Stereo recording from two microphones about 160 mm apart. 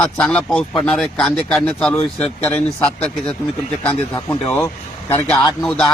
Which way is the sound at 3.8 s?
15° left (ahead or behind).